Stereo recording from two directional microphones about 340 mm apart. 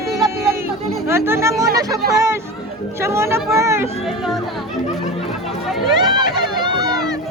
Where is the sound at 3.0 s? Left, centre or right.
Centre.